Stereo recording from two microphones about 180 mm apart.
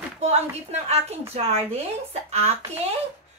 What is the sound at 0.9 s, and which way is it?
Speech, 35° right (ahead or behind).